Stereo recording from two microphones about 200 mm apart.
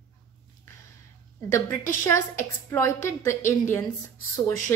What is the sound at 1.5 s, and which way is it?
A woman's voice, 15° left (ahead or behind).